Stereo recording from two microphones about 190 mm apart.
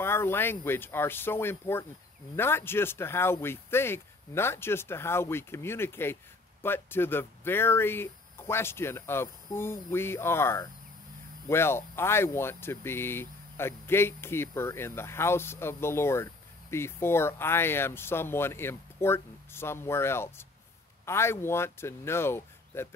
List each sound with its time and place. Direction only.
0.0 s speech: 10° left (ahead or behind)